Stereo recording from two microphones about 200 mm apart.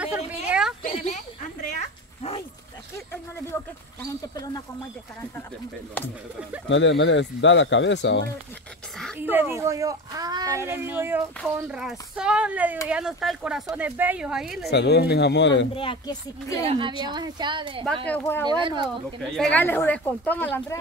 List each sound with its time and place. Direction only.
0.5 s a sound: 5° right (ahead or behind)
0.8 s a sound: 35° left (ahead or behind)
6.7 s speech: 65° left (ahead or behind)
9.2 s a sound: 10° right (ahead or behind)
11.5 s speech: 5° right (ahead or behind)
14.7 s a man's voice: 55° left (ahead or behind)
15.7 s speech: 25° left (ahead or behind)
16.6 s a woman's voice: 25° right (ahead or behind)
18.0 s speech: 10° left (ahead or behind)
18.5 s a woman's voice: 20° right (ahead or behind)
19.3 s speech: 10° left (ahead or behind)